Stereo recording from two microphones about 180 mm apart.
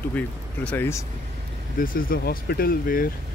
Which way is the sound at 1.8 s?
55° left (ahead or behind).